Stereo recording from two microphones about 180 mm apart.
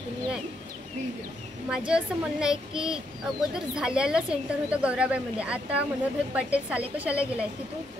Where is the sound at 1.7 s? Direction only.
5° right (ahead or behind).